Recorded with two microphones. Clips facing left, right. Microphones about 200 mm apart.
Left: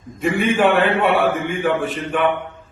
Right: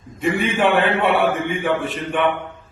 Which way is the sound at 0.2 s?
Centre (ahead or behind).